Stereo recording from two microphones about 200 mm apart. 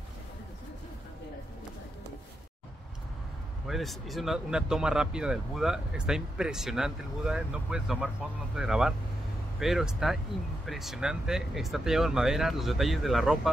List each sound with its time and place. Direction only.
3.6 s speech: centre (ahead or behind)